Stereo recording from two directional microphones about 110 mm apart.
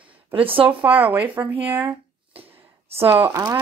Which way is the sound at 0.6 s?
15° right (ahead or behind).